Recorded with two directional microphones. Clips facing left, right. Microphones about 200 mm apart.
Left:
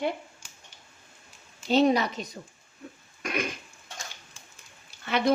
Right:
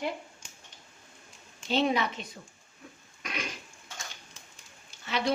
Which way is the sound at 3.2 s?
50° left (ahead or behind).